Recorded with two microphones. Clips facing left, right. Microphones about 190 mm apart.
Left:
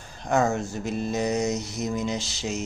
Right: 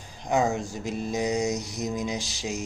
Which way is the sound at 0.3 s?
15° right (ahead or behind).